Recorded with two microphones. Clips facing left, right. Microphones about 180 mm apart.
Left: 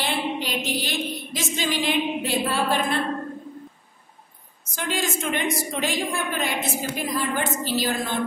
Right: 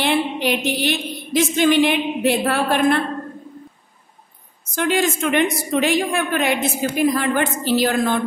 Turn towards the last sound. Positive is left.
turn(degrees=-65)  # may be behind; listen again after turning